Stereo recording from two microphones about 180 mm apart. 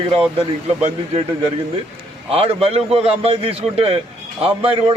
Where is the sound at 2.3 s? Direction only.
30° right (ahead or behind).